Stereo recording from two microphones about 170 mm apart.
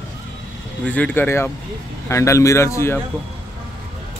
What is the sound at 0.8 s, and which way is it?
Speech, 10° left (ahead or behind).